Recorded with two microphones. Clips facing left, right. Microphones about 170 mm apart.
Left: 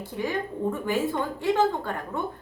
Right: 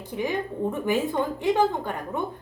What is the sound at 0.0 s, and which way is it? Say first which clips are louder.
A woman's voice: right 1 dB; 20° right (ahead or behind).